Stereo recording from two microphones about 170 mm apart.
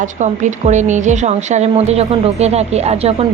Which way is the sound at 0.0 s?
45° right (ahead or behind).